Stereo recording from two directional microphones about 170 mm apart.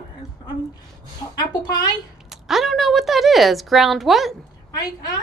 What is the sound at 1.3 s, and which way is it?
Speech, 25° left (ahead or behind).